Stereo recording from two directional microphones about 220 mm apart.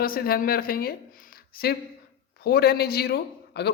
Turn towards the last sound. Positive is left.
turn(degrees=45)  # may be behind; listen again after turning